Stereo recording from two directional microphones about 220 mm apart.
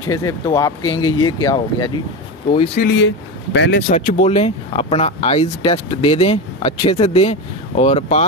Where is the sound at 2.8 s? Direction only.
35° left (ahead or behind).